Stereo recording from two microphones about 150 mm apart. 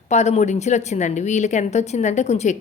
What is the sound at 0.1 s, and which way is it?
A woman's voice, 50° left (ahead or behind).